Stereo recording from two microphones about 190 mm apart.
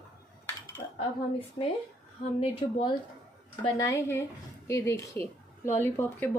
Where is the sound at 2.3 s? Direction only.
30° left (ahead or behind).